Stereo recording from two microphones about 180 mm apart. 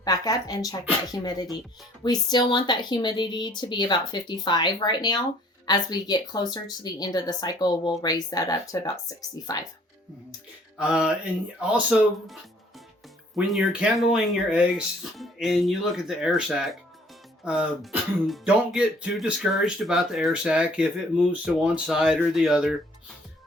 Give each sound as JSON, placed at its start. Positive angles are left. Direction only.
{"t": 0.0, "sound": "speech", "side_deg": 20}
{"t": 10.8, "sound": "speech", "side_deg": -5}